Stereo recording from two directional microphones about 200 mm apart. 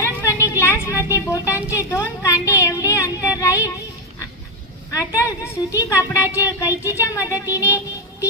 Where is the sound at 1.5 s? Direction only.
10° right (ahead or behind).